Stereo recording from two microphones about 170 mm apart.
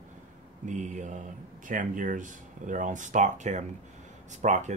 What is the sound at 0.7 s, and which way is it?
Speech, 45° right (ahead or behind).